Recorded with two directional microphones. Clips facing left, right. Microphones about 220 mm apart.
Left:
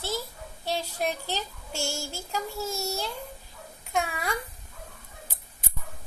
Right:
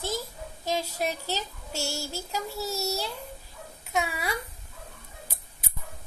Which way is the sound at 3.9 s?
5° right (ahead or behind).